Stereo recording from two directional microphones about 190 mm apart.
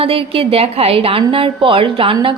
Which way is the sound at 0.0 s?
30° right (ahead or behind).